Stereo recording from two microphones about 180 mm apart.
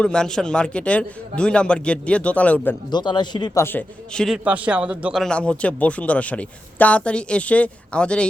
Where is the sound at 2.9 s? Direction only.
25° left (ahead or behind); by 4.3 s 5° left (ahead or behind).